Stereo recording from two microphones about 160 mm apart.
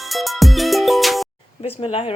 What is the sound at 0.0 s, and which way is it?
Music, centre (ahead or behind).